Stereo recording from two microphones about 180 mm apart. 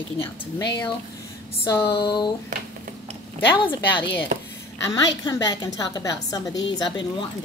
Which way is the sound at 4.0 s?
75° left (ahead or behind).